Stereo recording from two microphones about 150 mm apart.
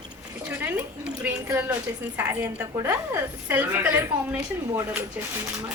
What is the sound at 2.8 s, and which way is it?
Speech, 15° right (ahead or behind).